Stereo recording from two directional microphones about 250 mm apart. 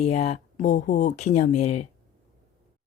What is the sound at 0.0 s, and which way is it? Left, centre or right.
A woman's voice, left.